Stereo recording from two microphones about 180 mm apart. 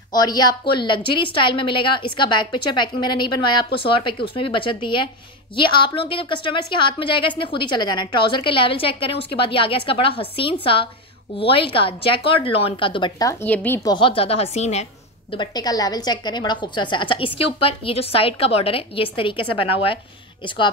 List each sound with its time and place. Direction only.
0.1 s a woman's voice: 25° left (ahead or behind)
13.8 s a woman's voice: 25° left (ahead or behind)
15.3 s a woman's voice: 25° left (ahead or behind)